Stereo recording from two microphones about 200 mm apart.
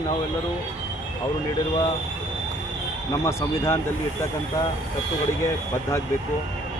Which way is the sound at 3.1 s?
15° left (ahead or behind).